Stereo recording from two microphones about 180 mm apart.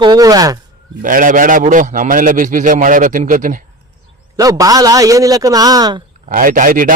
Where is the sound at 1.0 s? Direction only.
50° right (ahead or behind).